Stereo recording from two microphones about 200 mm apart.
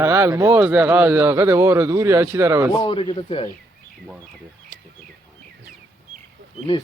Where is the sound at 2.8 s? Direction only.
25° left (ahead or behind).